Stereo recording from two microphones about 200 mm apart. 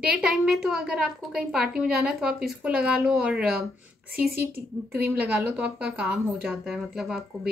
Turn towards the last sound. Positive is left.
turn(degrees=0)  # may be behind; listen again after turning